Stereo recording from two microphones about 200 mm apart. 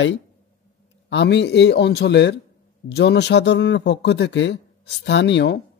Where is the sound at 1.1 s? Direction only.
60° left (ahead or behind).